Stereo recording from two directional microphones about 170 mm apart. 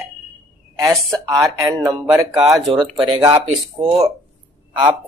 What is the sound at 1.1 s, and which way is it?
Speech, 25° right (ahead or behind).